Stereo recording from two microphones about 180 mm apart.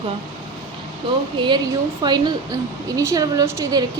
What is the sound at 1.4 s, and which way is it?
Speech, 25° right (ahead or behind).